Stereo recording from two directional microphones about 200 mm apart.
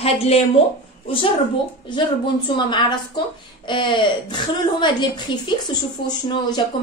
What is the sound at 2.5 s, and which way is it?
A woman's voice, 25° left (ahead or behind).